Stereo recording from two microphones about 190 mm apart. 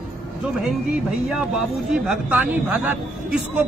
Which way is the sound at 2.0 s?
10° right (ahead or behind).